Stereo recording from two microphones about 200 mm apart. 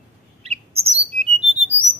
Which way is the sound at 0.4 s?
30° right (ahead or behind).